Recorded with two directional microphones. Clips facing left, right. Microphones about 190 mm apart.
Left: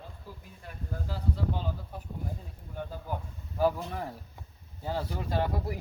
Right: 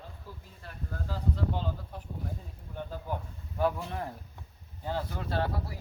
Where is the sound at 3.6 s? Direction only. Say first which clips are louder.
Left 2 dB; 5° left (ahead or behind).